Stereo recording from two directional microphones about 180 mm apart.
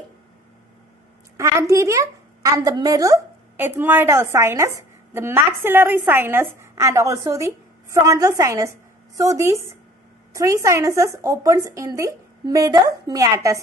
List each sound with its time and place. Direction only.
1.3 s a woman's voice: 15° right (ahead or behind)